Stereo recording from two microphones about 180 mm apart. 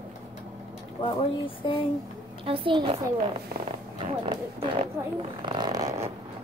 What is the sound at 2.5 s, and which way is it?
Speech, 30° right (ahead or behind).